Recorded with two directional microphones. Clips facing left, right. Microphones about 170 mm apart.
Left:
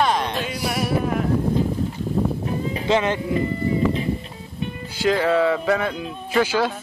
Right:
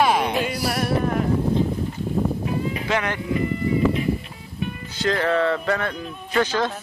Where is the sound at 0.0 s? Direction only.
10° right (ahead or behind).